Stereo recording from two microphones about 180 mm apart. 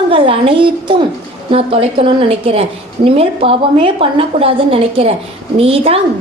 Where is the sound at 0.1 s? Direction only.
30° right (ahead or behind).